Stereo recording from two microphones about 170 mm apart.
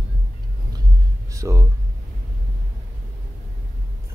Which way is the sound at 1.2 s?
20° right (ahead or behind).